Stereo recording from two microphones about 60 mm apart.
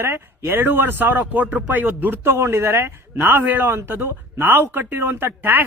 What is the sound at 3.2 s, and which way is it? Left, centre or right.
Speech, right.